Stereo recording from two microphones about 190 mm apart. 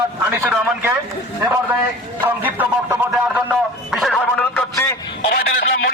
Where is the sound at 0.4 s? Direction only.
5° right (ahead or behind).